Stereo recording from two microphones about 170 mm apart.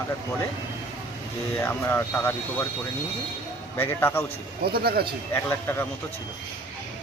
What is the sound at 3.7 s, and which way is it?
Speech, 15° left (ahead or behind).